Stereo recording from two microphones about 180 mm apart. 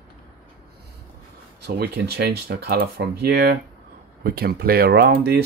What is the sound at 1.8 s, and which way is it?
Speech, 60° right (ahead or behind).